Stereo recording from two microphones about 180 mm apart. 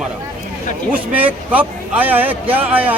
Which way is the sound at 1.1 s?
10° right (ahead or behind).